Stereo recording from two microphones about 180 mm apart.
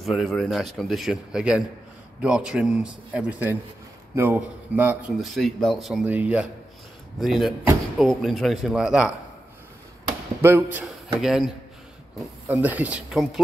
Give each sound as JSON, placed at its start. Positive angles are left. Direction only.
{"t": 0.0, "sound": "speech", "side_deg": 0}
{"t": 10.4, "sound": "speech", "side_deg": -10}